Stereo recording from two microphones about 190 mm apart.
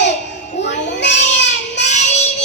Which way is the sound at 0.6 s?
65° left (ahead or behind).